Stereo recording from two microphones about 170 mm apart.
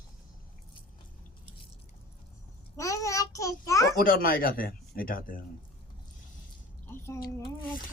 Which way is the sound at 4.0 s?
60° left (ahead or behind).